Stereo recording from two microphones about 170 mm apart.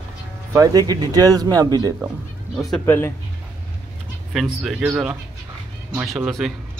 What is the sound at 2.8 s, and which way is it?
Speech, 15° left (ahead or behind).